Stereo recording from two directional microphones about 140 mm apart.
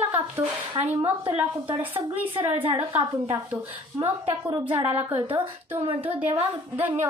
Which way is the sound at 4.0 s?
40° right (ahead or behind).